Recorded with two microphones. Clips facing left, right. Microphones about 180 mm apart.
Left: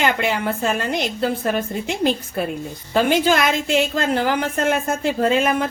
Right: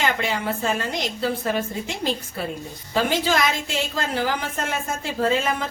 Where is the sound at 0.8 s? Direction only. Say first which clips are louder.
Left 4 dB; 60° left (ahead or behind).